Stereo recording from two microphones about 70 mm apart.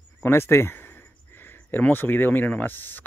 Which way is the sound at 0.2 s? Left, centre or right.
Left.